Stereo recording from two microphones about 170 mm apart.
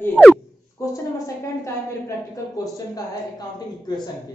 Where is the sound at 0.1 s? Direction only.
Centre (ahead or behind).